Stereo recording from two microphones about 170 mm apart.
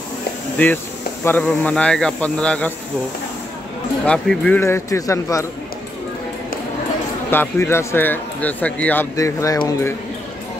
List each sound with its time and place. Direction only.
0.6 s speech: 10° left (ahead or behind)
4.0 s speech: 5° left (ahead or behind)
7.2 s speech: 15° left (ahead or behind)
9.1 s speech: 20° left (ahead or behind)